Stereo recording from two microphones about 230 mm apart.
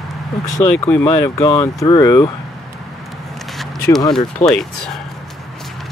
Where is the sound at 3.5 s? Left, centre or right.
Centre.